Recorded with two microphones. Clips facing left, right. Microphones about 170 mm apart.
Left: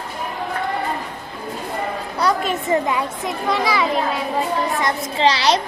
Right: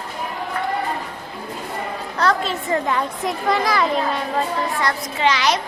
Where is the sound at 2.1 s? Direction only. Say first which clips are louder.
Even; 15° left (ahead or behind).